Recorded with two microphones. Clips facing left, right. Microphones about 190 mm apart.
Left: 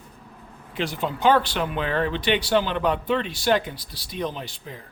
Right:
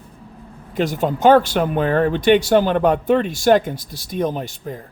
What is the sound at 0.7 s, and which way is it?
Speech, 45° right (ahead or behind).